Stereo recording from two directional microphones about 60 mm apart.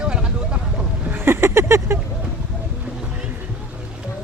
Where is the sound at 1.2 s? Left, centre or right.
Right.